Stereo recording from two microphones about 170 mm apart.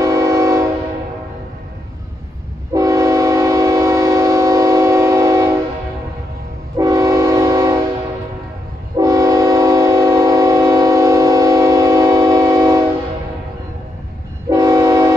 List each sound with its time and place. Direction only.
0.0 s train: 20° right (ahead or behind)
2.7 s train: 20° right (ahead or behind)
6.8 s train: 20° right (ahead or behind)
8.9 s train: 20° right (ahead or behind)
14.5 s train: 20° right (ahead or behind)